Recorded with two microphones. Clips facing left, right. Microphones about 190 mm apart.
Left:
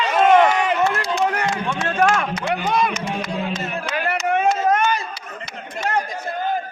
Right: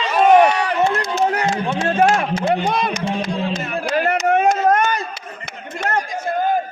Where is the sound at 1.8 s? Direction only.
30° right (ahead or behind); by 6.0 s 55° right (ahead or behind).